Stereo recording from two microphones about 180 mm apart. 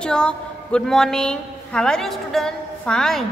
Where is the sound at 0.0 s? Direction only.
5° left (ahead or behind).